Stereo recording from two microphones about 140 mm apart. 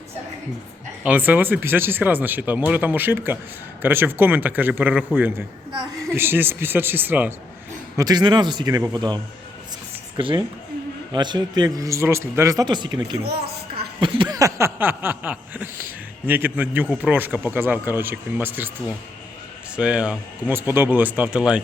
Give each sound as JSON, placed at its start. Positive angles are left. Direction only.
{"t": 1.0, "sound": "a man's voice", "side_deg": -10}
{"t": 7.9, "sound": "a man's voice", "side_deg": -30}
{"t": 14.0, "sound": "a sound", "side_deg": -30}
{"t": 16.2, "sound": "a man's voice", "side_deg": -15}
{"t": 19.7, "sound": "a man's voice", "side_deg": -10}